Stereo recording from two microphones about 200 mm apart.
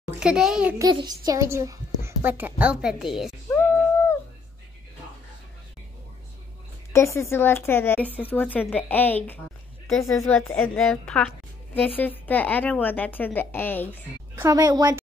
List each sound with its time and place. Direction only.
0.2 s a child's voice: 5° right (ahead or behind)
0.7 s a child's voice: 20° right (ahead or behind); by 3.3 s centre (ahead or behind)
3.4 s a sound: 10° left (ahead or behind)
6.9 s a woman's voice: 15° left (ahead or behind)
14.4 s a child's voice: 15° right (ahead or behind)